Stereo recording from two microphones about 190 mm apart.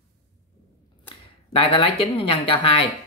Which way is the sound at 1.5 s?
30° left (ahead or behind).